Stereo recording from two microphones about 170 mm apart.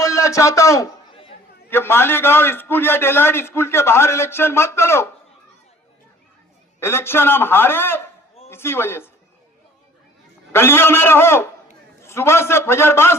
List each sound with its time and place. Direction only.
0.0 s a man's voice: 20° left (ahead or behind)
6.7 s a man's voice: 15° left (ahead or behind)
10.5 s a man's voice: 15° left (ahead or behind)